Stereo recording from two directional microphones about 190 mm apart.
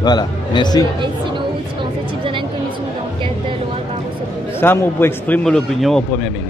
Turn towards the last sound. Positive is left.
turn(degrees=0)  # may be behind; listen again after turning